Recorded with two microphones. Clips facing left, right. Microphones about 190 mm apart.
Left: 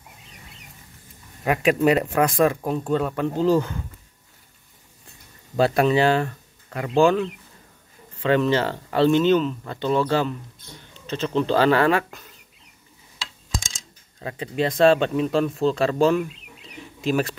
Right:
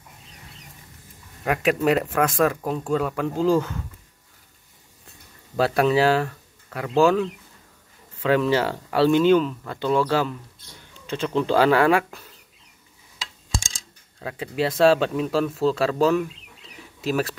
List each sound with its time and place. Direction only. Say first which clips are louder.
1.4 s speech: left 2 dB; centre (ahead or behind)
5.6 s speech: left 1 dB; centre (ahead or behind)
8.2 s speech: even; 5° right (ahead or behind)
13.5 s a sound: right 1 dB; 30° right (ahead or behind)
14.2 s speech: left 1 dB; 5° right (ahead or behind)
16.7 s bird: left 2 dB; centre (ahead or behind)